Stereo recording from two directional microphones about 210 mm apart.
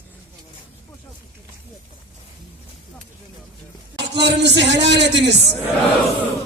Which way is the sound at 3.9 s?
55° right (ahead or behind).